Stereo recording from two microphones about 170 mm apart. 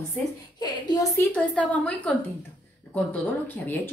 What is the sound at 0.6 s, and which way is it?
Speech, 25° left (ahead or behind).